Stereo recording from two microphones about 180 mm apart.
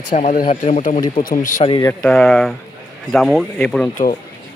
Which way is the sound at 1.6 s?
25° left (ahead or behind).